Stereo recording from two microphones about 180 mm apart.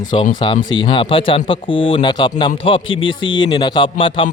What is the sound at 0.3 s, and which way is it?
A man's voice, 30° left (ahead or behind).